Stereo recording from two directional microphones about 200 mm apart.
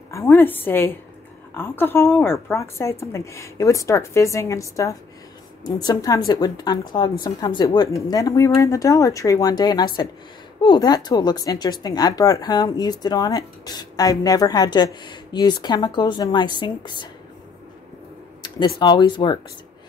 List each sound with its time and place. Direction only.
0.1 s a woman's voice: 10° left (ahead or behind)
18.8 s speech: 20° left (ahead or behind)